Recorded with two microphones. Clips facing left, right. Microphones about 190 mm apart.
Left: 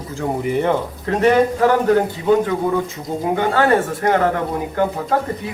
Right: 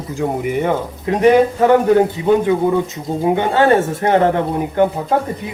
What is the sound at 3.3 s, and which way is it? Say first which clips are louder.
Speech: right 2 dB; 20° right (ahead or behind).